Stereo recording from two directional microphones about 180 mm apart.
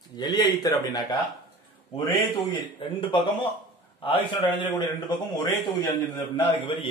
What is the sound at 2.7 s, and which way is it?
A man's voice, 30° left (ahead or behind).